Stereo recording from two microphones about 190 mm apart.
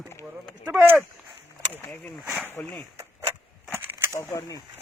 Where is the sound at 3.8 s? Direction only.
10° right (ahead or behind).